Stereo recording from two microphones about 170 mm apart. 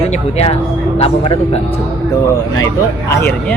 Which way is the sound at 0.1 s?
40° left (ahead or behind).